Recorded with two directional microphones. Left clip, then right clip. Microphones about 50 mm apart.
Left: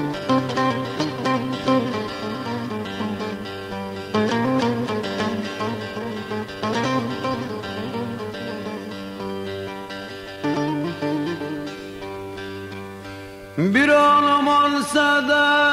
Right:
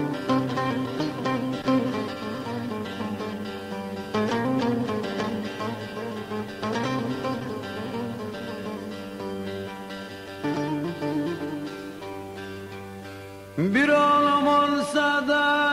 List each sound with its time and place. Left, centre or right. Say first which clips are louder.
0.1 s music: left 4 dB; right
10.4 s music: left 4 dB; right
13.6 s music: left 5 dB; right